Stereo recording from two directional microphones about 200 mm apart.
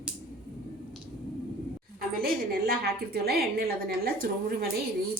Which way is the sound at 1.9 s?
50° right (ahead or behind).